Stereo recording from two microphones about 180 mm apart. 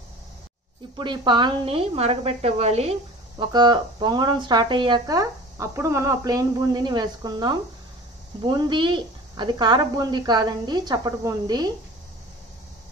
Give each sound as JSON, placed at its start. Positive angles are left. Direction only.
{"t": 0.9, "sound": "a woman's voice", "side_deg": -25}
{"t": 3.3, "sound": "speech", "side_deg": -25}